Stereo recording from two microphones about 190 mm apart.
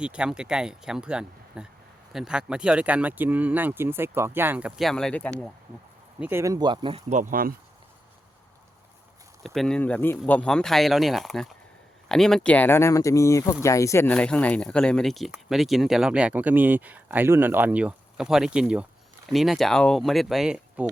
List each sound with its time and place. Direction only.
0.0 s speech: 5° right (ahead or behind)
6.1 s speech: 10° right (ahead or behind)
7.1 s speech: 45° right (ahead or behind)
9.4 s speech: centre (ahead or behind)